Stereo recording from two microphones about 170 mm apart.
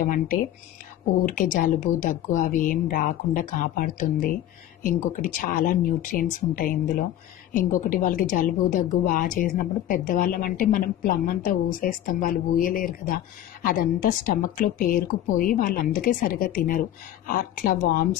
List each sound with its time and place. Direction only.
0.0 s a woman's voice: 55° left (ahead or behind)